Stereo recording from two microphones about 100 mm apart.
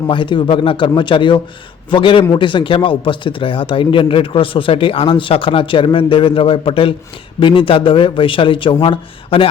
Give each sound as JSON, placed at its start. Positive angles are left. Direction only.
{"t": 0.1, "sound": "speech", "side_deg": 55}